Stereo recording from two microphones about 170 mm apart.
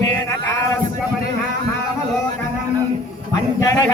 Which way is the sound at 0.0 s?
20° left (ahead or behind).